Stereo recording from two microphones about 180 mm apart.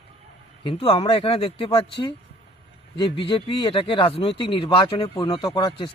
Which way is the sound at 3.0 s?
30° left (ahead or behind).